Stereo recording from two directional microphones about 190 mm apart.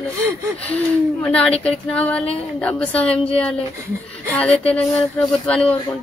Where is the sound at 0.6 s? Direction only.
5° left (ahead or behind).